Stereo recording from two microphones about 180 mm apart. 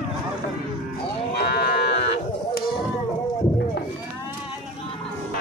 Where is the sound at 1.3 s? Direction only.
65° left (ahead or behind).